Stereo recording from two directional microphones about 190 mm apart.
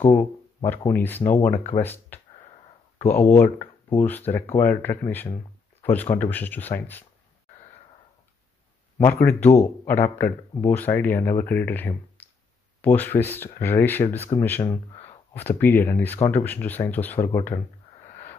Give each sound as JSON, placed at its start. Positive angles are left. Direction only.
{"t": 0.7, "sound": "speech", "side_deg": 10}
{"t": 8.9, "sound": "speech", "side_deg": 15}
{"t": 15.0, "sound": "a sound", "side_deg": 35}
{"t": 15.4, "sound": "speech", "side_deg": 10}